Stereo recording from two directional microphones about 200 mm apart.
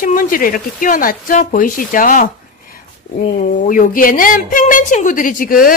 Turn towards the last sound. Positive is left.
turn(degrees=45)  # may be behind; listen again after turning